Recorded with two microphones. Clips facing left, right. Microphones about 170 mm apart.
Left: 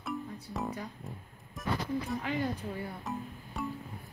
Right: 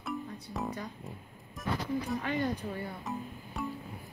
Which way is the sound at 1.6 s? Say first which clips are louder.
Even; centre (ahead or behind).